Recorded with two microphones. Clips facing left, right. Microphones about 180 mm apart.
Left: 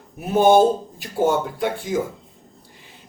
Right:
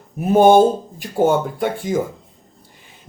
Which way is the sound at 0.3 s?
50° right (ahead or behind).